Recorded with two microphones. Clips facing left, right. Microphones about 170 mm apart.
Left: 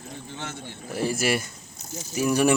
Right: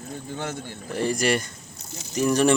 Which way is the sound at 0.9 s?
5° left (ahead or behind).